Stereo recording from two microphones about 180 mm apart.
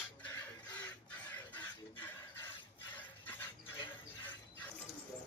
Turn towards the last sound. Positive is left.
turn(degrees=10)  # may be behind; listen again after turning